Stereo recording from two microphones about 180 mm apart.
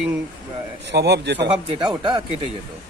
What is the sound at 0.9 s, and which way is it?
Speech, 70° right (ahead or behind).